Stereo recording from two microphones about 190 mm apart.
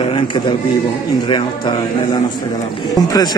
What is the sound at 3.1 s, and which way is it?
Speech, 20° left (ahead or behind).